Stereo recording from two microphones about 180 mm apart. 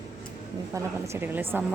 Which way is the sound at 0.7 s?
15° right (ahead or behind).